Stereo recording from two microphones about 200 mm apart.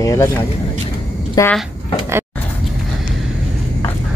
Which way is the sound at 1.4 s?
15° left (ahead or behind).